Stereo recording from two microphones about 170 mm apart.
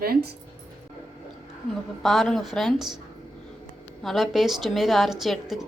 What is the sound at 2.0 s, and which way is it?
Speech, centre (ahead or behind).